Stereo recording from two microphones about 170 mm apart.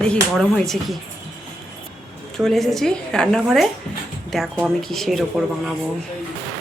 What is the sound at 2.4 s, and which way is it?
Speech, centre (ahead or behind).